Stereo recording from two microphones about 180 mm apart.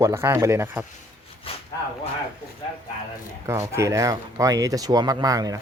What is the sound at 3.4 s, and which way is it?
Speech, 15° right (ahead or behind).